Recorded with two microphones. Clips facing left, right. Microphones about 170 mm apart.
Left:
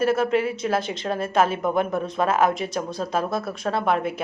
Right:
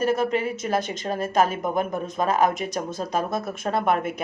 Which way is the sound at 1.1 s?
40° right (ahead or behind).